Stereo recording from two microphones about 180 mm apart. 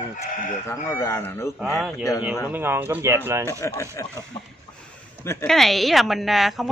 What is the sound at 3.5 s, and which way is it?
Speech, 15° left (ahead or behind).